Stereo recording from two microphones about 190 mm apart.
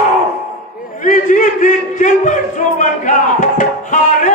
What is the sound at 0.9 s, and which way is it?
A man's voice, 40° left (ahead or behind).